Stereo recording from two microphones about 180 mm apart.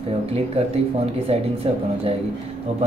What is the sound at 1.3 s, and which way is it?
Speech, 35° right (ahead or behind).